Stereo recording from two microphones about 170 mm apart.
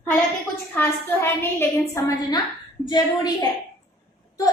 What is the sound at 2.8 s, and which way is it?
Speech, 25° left (ahead or behind).